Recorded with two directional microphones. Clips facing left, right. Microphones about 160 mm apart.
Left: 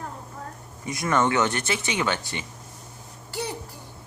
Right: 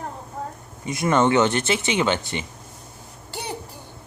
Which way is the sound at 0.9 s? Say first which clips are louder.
Right 4 dB; 25° right (ahead or behind).